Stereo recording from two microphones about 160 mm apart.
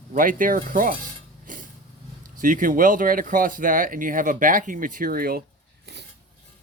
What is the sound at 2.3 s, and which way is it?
Speech, 55° right (ahead or behind).